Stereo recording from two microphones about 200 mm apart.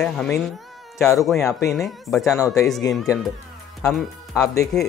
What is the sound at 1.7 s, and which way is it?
Speech, centre (ahead or behind).